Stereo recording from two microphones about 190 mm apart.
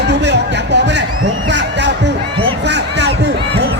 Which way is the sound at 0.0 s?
65° right (ahead or behind).